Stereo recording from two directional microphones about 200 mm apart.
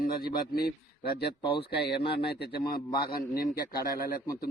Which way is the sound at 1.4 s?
25° left (ahead or behind).